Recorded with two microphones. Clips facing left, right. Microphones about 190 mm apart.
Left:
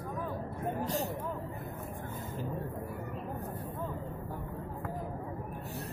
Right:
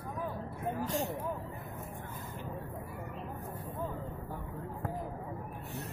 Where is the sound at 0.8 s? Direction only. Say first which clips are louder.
Even; 35° left (ahead or behind).